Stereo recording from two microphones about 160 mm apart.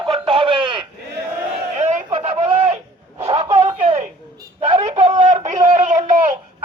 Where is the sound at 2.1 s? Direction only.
35° right (ahead or behind); by 6.2 s 50° right (ahead or behind).